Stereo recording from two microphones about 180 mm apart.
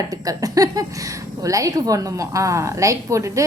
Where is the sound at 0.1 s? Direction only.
20° right (ahead or behind).